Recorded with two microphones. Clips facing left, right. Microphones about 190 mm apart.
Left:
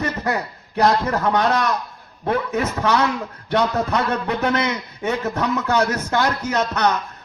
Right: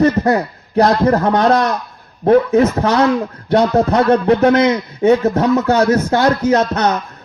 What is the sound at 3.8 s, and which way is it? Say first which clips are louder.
Speech: right 10 dB; 45° right (ahead or behind).